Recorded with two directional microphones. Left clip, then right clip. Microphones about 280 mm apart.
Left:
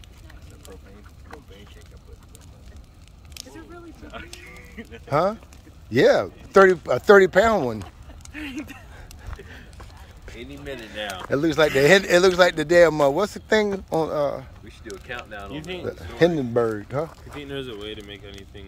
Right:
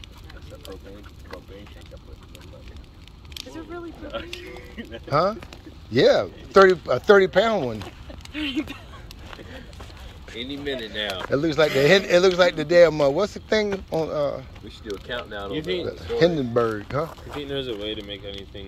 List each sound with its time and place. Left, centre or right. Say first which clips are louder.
4.1 s speech: right 5 dB; centre
5.0 s speech: even; centre
10.3 s speech: right 6 dB; centre
15.9 s speech: left 1 dB; centre
17.4 s speech: right 4 dB; centre